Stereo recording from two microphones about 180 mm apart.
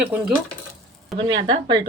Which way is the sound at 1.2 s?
25° right (ahead or behind).